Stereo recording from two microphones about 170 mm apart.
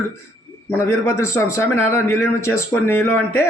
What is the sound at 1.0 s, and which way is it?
Speech, 15° left (ahead or behind).